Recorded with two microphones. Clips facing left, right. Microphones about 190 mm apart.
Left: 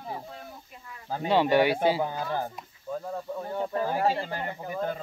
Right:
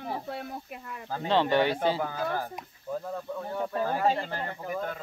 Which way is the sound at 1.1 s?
15° left (ahead or behind).